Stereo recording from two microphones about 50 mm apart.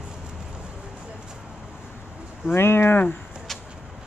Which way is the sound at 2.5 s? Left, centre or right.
Left.